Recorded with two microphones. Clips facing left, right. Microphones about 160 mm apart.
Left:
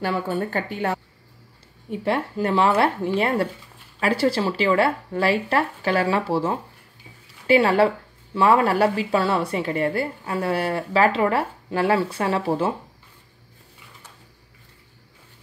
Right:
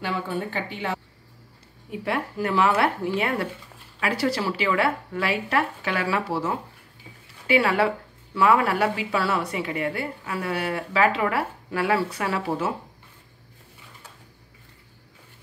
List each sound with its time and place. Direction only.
0.0 s a woman's voice: 45° left (ahead or behind)
1.9 s a woman's voice: 30° left (ahead or behind)